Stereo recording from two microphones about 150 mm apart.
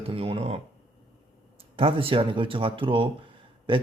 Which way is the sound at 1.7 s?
40° right (ahead or behind).